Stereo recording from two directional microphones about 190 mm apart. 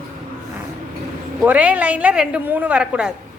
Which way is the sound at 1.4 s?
5° right (ahead or behind).